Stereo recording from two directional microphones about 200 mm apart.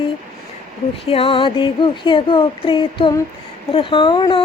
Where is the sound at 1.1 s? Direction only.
30° left (ahead or behind).